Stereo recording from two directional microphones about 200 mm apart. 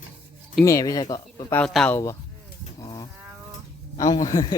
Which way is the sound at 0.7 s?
15° left (ahead or behind).